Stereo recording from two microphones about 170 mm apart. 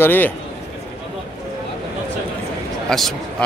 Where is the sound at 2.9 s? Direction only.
Centre (ahead or behind).